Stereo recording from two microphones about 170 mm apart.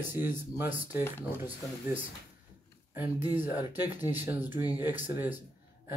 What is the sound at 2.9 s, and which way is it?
Speech, 10° right (ahead or behind).